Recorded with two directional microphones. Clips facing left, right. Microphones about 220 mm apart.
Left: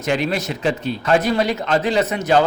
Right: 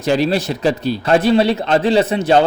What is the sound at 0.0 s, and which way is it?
A man's voice, 35° right (ahead or behind).